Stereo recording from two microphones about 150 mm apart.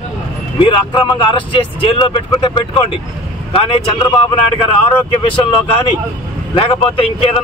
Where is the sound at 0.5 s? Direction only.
35° left (ahead or behind).